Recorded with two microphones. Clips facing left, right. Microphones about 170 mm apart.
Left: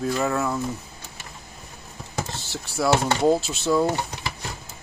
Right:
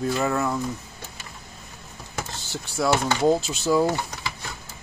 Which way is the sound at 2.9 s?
25° left (ahead or behind).